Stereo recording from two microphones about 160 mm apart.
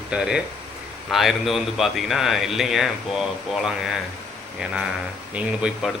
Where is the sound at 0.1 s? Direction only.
5° right (ahead or behind).